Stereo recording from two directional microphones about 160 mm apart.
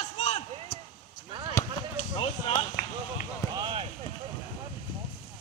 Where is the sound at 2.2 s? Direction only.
30° left (ahead or behind).